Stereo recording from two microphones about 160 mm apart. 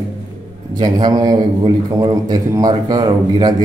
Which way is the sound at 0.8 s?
25° right (ahead or behind).